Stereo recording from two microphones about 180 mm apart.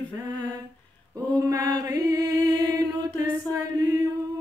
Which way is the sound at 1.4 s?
20° right (ahead or behind).